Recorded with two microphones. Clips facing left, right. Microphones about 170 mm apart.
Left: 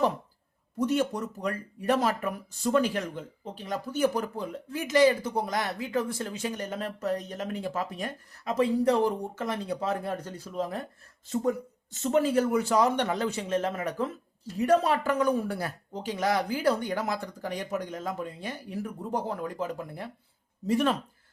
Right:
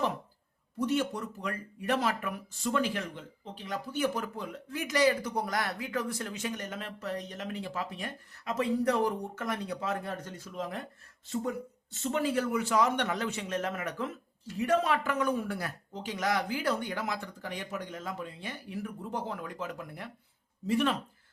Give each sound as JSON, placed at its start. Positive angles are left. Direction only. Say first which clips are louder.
{"t": 0.8, "sound": "speech", "louder": "left 3 dB", "side_deg": 45}
{"t": 20.7, "sound": "speech", "louder": "left 3 dB", "side_deg": 40}